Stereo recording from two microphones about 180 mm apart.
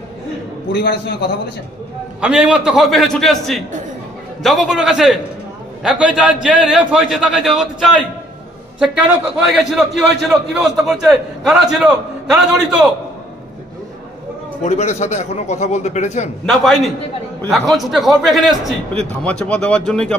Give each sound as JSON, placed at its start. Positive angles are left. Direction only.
{"t": 0.7, "sound": "a man's voice", "side_deg": 65}
{"t": 2.2, "sound": "a man's voice", "side_deg": -5}
{"t": 8.7, "sound": "a man's voice", "side_deg": 0}
{"t": 14.6, "sound": "speech", "side_deg": 40}
{"t": 16.4, "sound": "a man's voice", "side_deg": 0}